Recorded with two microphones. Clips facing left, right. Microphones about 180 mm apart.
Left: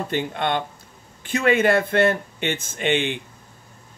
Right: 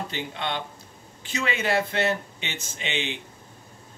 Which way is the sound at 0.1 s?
55° left (ahead or behind).